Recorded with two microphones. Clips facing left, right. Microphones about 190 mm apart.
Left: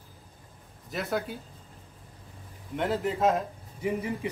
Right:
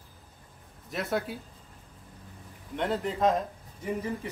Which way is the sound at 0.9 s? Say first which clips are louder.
Even; centre (ahead or behind).